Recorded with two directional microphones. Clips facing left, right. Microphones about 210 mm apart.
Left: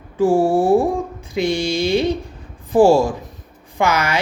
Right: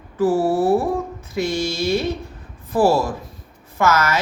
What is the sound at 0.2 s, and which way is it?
Speech, 15° left (ahead or behind).